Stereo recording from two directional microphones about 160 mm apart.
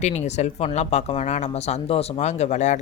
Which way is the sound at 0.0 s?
45° left (ahead or behind).